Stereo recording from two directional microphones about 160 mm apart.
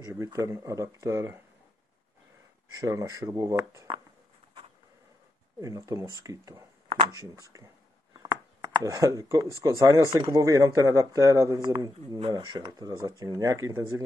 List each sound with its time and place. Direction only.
0.0 s speech: 20° right (ahead or behind)
2.7 s speech: 20° right (ahead or behind)
5.6 s speech: 20° right (ahead or behind)